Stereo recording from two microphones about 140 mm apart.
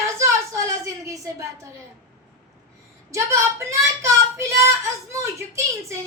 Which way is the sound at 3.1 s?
20° right (ahead or behind).